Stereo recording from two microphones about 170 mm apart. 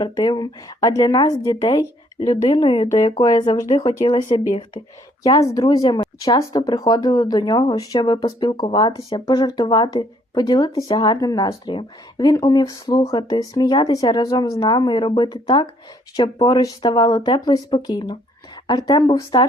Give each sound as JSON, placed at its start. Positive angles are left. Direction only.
{"t": 0.0, "sound": "speech", "side_deg": 25}
{"t": 8.5, "sound": "speech", "side_deg": 35}